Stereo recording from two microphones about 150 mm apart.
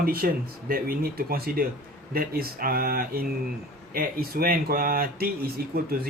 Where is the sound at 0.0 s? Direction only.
80° right.